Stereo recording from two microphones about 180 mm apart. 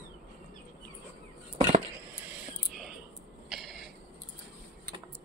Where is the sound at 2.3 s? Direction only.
5° right (ahead or behind).